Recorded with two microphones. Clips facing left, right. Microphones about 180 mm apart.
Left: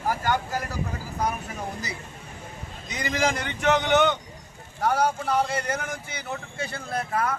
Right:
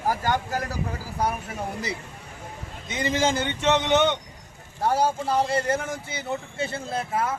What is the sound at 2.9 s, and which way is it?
A man's voice, 25° right (ahead or behind).